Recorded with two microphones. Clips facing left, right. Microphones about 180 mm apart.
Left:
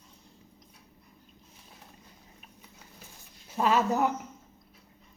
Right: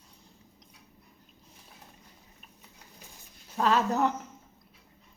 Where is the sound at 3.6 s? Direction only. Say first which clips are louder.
Even; 10° left (ahead or behind).